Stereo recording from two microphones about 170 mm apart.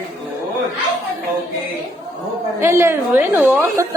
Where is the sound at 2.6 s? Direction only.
15° right (ahead or behind).